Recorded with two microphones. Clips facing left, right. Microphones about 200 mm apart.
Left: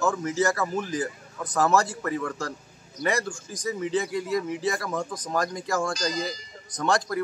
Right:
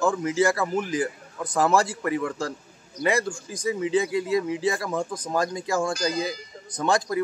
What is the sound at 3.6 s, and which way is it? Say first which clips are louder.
A man's voice: right 3 dB; 10° right (ahead or behind).